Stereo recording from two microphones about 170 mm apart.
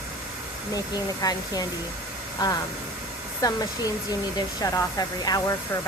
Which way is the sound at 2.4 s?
20° left (ahead or behind).